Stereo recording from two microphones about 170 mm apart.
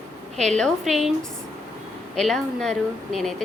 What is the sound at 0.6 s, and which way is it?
Speech, centre (ahead or behind).